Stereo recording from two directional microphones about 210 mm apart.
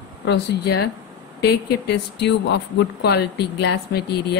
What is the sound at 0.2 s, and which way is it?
Speech, 55° left (ahead or behind).